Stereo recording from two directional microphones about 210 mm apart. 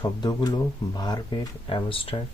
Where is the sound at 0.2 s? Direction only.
20° left (ahead or behind).